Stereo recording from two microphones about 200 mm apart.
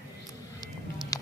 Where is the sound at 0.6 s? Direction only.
20° left (ahead or behind).